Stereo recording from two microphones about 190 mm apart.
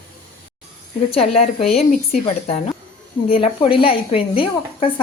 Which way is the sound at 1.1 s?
30° left (ahead or behind).